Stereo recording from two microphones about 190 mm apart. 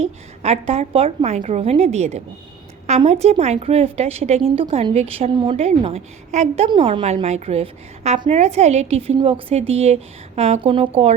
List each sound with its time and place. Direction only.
0.0 s a woman's voice: 35° right (ahead or behind)